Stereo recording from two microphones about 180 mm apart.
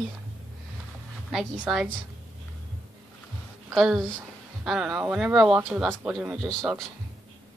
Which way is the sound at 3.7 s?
Centre (ahead or behind).